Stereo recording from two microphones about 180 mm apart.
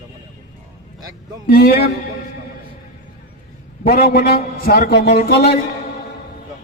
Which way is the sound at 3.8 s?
60° left (ahead or behind).